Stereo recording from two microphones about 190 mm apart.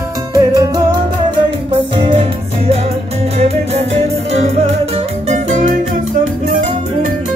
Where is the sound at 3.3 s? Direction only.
35° right (ahead or behind).